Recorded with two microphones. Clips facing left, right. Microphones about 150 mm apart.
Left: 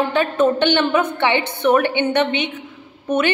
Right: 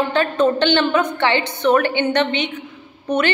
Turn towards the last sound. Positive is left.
turn(degrees=5)  # may be behind; listen again after turning